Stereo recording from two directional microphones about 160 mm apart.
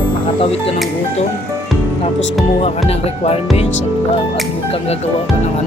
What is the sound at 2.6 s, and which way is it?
Speech, 40° left (ahead or behind).